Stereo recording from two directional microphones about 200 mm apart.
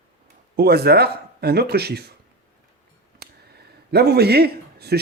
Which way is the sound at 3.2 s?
55° right (ahead or behind).